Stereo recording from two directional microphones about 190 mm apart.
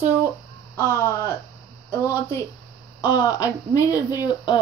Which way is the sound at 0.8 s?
15° left (ahead or behind).